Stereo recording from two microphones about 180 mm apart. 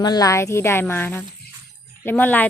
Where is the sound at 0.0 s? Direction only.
20° left (ahead or behind).